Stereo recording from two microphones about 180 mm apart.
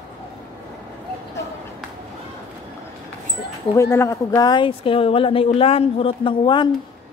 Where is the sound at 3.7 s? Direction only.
15° left (ahead or behind).